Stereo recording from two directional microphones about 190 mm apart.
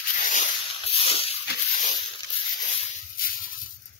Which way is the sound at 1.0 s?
30° left (ahead or behind).